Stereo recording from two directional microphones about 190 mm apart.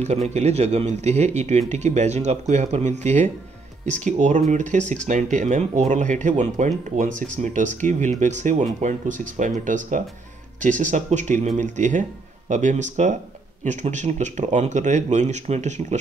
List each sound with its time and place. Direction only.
0.0 s speech: 35° right (ahead or behind)